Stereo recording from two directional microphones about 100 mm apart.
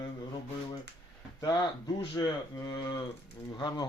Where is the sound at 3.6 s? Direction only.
45° left (ahead or behind).